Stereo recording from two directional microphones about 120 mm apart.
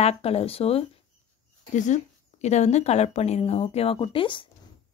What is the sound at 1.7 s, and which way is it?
A woman's voice, 85° left.